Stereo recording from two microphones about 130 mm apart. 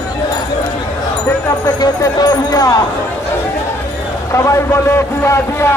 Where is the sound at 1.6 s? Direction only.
25° left (ahead or behind).